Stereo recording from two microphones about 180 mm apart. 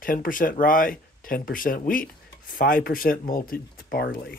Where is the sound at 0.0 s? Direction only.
50° left (ahead or behind).